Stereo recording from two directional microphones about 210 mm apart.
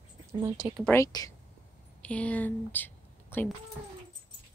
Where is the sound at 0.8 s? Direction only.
15° left (ahead or behind).